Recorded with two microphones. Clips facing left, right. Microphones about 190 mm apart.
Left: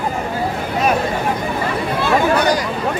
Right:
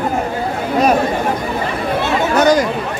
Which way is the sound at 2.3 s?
45° right (ahead or behind).